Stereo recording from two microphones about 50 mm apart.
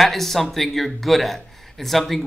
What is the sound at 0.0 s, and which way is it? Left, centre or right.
Speech, centre.